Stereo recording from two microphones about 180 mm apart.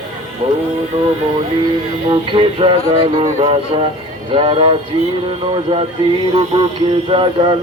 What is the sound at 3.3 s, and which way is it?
Speech, 30° right (ahead or behind).